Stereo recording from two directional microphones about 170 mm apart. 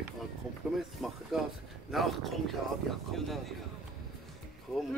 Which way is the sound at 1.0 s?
Centre (ahead or behind).